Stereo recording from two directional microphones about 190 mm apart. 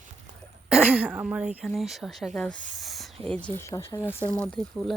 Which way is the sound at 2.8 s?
Centre (ahead or behind).